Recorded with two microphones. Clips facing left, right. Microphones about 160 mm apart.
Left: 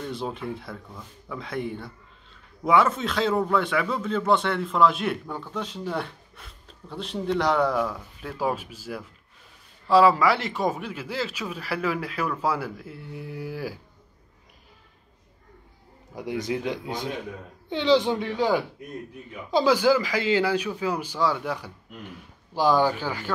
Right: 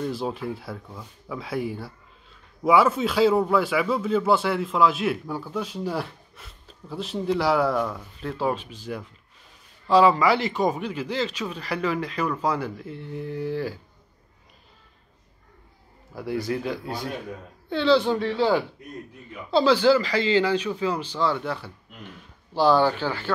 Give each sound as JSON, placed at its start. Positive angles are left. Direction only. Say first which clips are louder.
{"t": 0.0, "sound": "speech", "louder": "right 3 dB", "side_deg": -5}
{"t": 16.1, "sound": "speech", "louder": "right 1 dB", "side_deg": 20}